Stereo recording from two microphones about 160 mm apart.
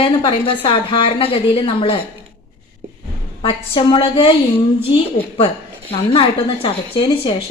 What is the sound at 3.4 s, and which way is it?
A woman's voice, 35° left (ahead or behind).